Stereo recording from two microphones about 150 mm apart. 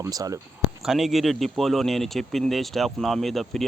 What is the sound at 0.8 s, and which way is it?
Speech, centre (ahead or behind).